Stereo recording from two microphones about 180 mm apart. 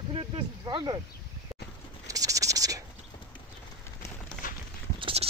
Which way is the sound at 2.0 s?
20° right (ahead or behind).